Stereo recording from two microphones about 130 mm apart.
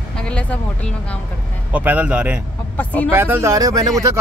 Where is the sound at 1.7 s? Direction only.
10° right (ahead or behind).